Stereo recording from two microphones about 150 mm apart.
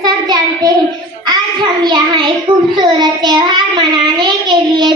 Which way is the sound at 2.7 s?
30° right (ahead or behind).